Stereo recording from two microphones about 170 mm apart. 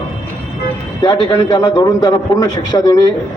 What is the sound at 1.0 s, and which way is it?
A man's voice, 30° left (ahead or behind).